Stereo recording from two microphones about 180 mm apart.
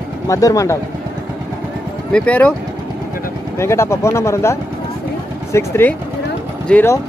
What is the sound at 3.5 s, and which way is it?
Speech, 15° left (ahead or behind).